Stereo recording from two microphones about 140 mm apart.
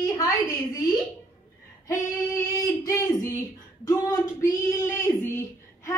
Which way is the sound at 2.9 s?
25° left (ahead or behind).